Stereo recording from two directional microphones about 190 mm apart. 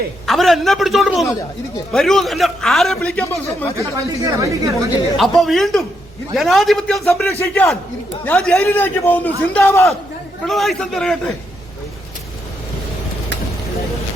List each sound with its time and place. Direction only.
0.3 s a man's voice: centre (ahead or behind)
4.3 s speech: 15° right (ahead or behind)
5.1 s a man's voice: centre (ahead or behind)
7.3 s a man's voice: 15° left (ahead or behind)
10.4 s a man's voice: centre (ahead or behind)